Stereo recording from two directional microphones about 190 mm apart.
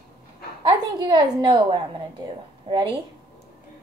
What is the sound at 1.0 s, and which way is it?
A woman's voice, 25° right (ahead or behind).